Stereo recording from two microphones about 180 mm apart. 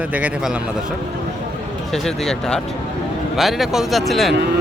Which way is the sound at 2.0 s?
5° left (ahead or behind).